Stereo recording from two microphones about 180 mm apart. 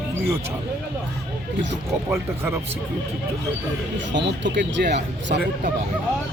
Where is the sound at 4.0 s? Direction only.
80° right.